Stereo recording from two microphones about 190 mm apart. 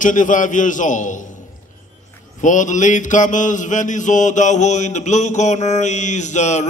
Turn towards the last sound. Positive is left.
turn(degrees=40)  # may be behind; listen again after turning